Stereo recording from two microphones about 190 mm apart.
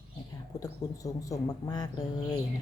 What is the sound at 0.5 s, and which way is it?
Speech, 15° left (ahead or behind).